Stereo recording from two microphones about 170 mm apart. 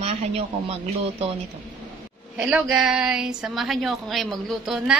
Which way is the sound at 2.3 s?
5° right (ahead or behind).